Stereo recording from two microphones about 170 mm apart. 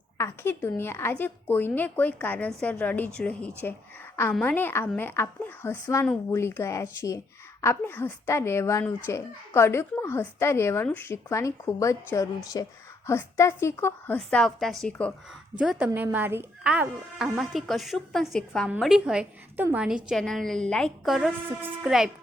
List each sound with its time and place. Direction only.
0.2 s speech: 15° left (ahead or behind)
14.2 s a woman's voice: 5° left (ahead or behind)
15.5 s a woman's voice: 5° right (ahead or behind)